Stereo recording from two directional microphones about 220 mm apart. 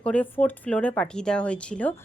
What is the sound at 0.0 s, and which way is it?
Speech, 5° left (ahead or behind).